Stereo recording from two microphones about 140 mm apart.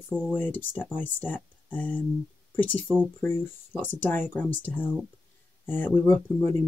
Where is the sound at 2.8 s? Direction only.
5° right (ahead or behind).